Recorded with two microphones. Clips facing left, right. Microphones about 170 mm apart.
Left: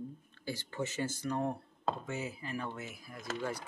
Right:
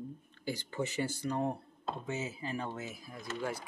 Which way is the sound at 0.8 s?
15° right (ahead or behind).